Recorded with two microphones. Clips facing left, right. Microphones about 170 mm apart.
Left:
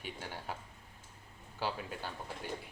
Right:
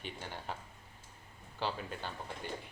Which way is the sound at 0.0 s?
10° left (ahead or behind).